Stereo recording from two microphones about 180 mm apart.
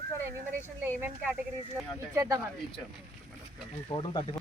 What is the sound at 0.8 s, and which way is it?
Speech, 10° right (ahead or behind).